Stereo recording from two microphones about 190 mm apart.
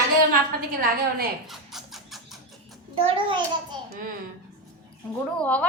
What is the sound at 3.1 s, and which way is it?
Speech, 25° right (ahead or behind).